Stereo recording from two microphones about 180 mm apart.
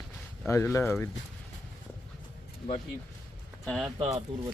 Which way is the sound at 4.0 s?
35° right (ahead or behind).